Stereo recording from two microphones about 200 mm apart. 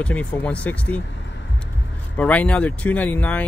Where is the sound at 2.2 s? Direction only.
5° left (ahead or behind).